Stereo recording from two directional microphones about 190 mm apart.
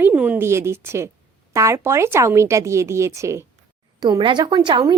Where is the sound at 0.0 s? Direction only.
5° right (ahead or behind).